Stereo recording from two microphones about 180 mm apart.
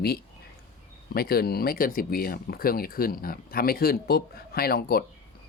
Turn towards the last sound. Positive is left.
turn(degrees=60)  # may be behind; listen again after turning